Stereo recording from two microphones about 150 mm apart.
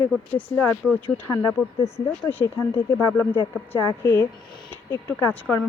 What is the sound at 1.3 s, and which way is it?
Speech, 20° left (ahead or behind).